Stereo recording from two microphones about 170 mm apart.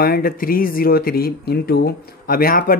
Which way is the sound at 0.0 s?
60° left (ahead or behind).